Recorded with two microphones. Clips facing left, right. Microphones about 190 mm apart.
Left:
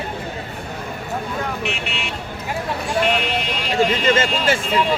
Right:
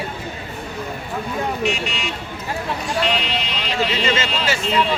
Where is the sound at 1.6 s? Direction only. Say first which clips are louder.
Right 4 dB; 60° left (ahead or behind).